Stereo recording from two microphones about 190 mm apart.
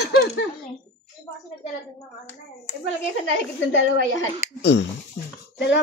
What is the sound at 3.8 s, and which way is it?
Speech, 85° left.